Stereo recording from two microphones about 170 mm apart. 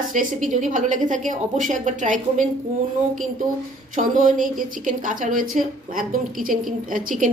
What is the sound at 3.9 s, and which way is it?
A woman's voice, 50° right (ahead or behind).